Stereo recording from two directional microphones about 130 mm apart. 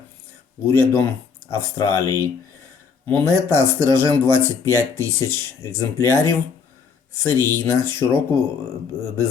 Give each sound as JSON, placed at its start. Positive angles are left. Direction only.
{"t": 0.6, "sound": "speech", "side_deg": 15}
{"t": 3.1, "sound": "speech", "side_deg": 15}